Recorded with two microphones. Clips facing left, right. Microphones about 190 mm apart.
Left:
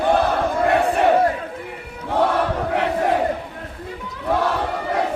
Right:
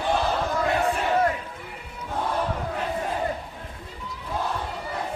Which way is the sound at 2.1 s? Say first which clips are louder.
Left 8 dB; 80° left.